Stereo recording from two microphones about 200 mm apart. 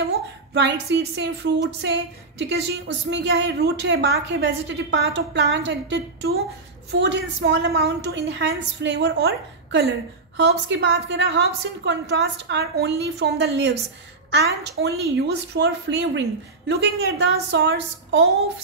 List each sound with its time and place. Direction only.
0.6 s a woman's voice: 60° right (ahead or behind)
10.7 s a woman's voice: 65° right (ahead or behind)